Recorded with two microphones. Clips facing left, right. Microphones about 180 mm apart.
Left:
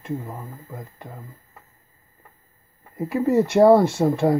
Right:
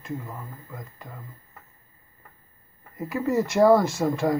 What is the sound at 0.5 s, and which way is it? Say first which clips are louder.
Speech: left 3 dB; 25° left (ahead or behind).